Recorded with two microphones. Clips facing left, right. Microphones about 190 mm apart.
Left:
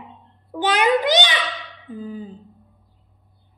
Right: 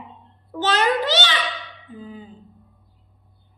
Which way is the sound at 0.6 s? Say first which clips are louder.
Left 2 dB; 15° left (ahead or behind).